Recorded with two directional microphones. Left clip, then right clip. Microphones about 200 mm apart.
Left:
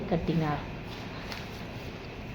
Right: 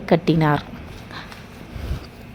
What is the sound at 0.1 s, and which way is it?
Speech, 40° right (ahead or behind).